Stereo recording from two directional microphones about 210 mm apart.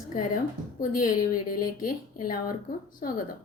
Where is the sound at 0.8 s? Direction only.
40° left (ahead or behind).